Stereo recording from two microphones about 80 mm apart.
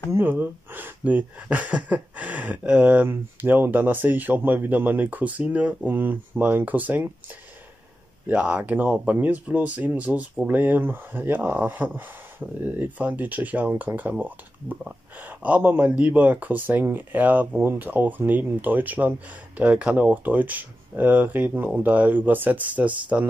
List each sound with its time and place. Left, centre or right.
0.2 s speech: right
8.3 s speech: centre